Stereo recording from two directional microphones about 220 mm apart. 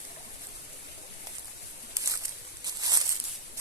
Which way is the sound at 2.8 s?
15° right (ahead or behind).